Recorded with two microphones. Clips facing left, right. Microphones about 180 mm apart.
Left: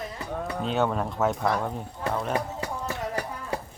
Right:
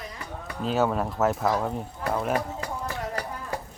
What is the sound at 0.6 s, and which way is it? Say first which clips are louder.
Speech: right 2 dB; centre (ahead or behind).